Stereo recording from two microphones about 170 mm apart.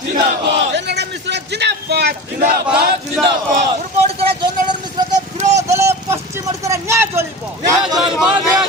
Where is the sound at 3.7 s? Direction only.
35° right (ahead or behind).